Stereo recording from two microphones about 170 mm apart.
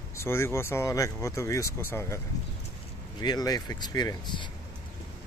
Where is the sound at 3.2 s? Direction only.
25° left (ahead or behind).